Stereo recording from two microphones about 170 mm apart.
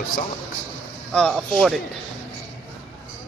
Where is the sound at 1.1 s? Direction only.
5° left (ahead or behind).